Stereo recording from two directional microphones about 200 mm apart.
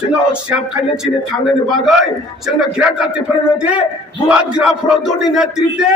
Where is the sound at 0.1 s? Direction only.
5° right (ahead or behind).